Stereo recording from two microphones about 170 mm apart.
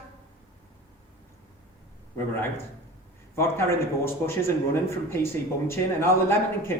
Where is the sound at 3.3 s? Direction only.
15° left (ahead or behind).